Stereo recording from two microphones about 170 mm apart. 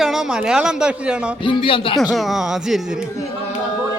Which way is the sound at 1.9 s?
Centre (ahead or behind).